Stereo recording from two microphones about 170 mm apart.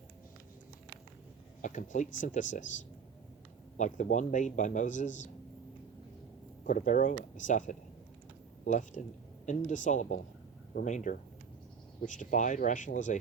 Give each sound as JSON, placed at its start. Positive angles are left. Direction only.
{"t": 1.6, "sound": "a man's voice", "side_deg": 45}
{"t": 3.8, "sound": "a man's voice", "side_deg": 45}
{"t": 6.7, "sound": "a man's voice", "side_deg": 50}